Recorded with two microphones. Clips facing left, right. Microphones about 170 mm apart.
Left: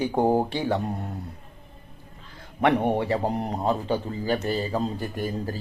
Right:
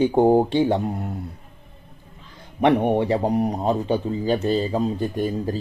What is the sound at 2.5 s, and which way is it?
Speech, 15° right (ahead or behind).